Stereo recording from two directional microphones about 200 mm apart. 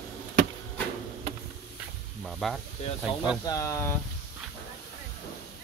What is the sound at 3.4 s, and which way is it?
Speech, 15° left (ahead or behind).